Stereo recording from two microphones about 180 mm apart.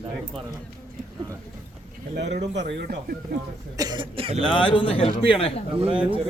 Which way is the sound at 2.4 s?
75° right (ahead or behind).